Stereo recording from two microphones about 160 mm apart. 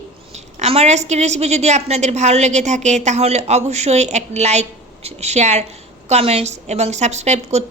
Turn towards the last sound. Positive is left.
turn(degrees=-45)  # may be behind; listen again after turning